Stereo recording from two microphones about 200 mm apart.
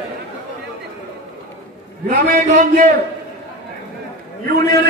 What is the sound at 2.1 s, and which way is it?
Speech, 45° right (ahead or behind).